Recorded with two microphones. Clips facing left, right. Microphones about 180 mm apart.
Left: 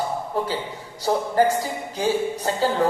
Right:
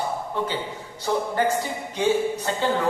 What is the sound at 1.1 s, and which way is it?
A man's voice, 40° left (ahead or behind).